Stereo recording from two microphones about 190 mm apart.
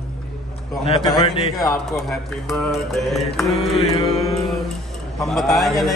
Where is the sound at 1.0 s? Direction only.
20° left (ahead or behind).